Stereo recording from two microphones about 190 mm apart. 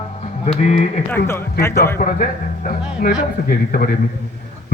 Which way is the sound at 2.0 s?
45° left (ahead or behind).